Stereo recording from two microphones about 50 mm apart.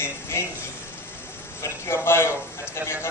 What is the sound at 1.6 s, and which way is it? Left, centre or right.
Speech, left.